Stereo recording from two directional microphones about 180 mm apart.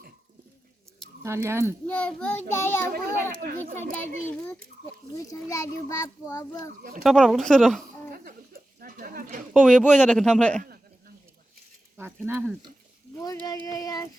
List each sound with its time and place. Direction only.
1.2 s speech: 15° right (ahead or behind)
1.9 s a child's voice: 5° left (ahead or behind)
2.9 s a child's voice: 55° right (ahead or behind)
5.1 s a child's voice: 20° left (ahead or behind)
7.0 s speech: centre (ahead or behind)
8.1 s speech: 55° right (ahead or behind)
9.5 s speech: 5° right (ahead or behind)
11.9 s speech: 10° right (ahead or behind)
13.1 s a child's voice: 20° left (ahead or behind)